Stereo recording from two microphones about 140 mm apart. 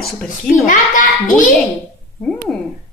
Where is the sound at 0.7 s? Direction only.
65° left (ahead or behind).